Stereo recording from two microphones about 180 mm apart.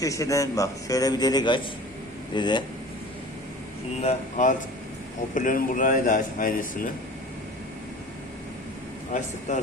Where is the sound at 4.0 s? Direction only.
40° left (ahead or behind).